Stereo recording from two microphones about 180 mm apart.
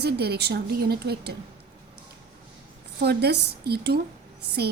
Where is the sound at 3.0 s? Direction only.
65° right (ahead or behind).